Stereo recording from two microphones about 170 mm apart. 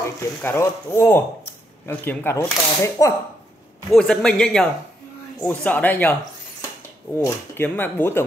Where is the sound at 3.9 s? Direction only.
5° left (ahead or behind).